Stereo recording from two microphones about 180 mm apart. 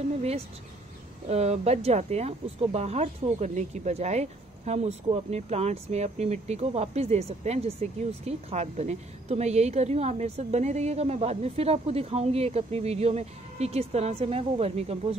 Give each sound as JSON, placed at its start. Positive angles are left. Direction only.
{"t": 1.3, "sound": "speech", "side_deg": -35}